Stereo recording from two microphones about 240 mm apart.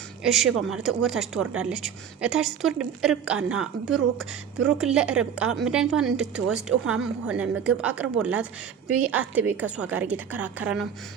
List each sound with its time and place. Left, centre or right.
0.2 s a woman's voice: centre